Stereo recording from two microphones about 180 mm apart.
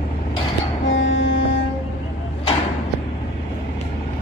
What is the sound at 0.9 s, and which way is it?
Music, 90° left.